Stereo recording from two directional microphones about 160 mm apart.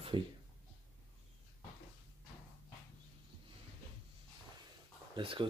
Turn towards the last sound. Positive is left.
turn(degrees=-35)  # may be behind; listen again after turning